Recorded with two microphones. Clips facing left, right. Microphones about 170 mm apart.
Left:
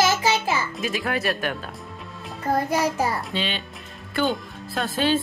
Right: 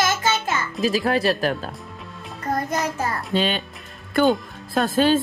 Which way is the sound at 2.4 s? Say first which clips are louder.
Left 2 dB; 5° left (ahead or behind).